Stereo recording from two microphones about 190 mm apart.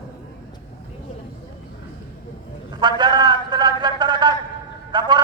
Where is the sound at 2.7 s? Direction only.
25° right (ahead or behind).